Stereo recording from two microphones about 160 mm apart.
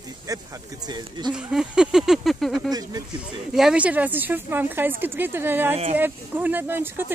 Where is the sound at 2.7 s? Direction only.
25° right (ahead or behind).